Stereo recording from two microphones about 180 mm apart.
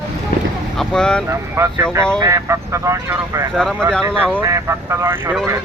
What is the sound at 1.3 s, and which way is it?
Speech, 15° right (ahead or behind).